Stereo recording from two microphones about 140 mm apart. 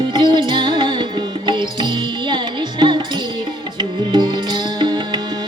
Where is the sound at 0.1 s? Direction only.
35° right (ahead or behind).